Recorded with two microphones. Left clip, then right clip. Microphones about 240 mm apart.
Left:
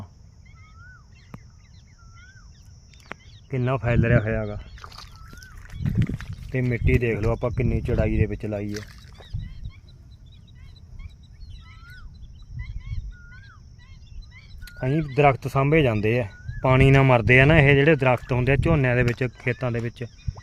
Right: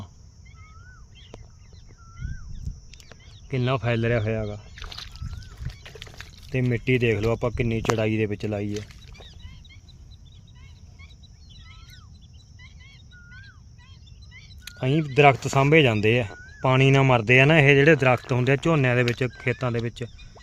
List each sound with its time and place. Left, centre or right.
3.5 s speech: centre
5.8 s speech: centre
12.8 s a sound: right
14.8 s speech: centre
16.6 s speech: centre